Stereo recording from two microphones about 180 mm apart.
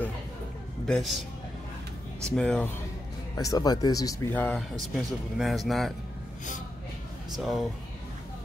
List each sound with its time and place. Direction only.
0.8 s speech: centre (ahead or behind)
2.2 s speech: 5° left (ahead or behind)
3.3 s speech: 20° left (ahead or behind)
4.9 s speech: centre (ahead or behind)
7.3 s speech: centre (ahead or behind)